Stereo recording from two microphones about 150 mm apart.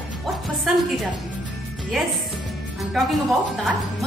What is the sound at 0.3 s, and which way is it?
Music, centre (ahead or behind).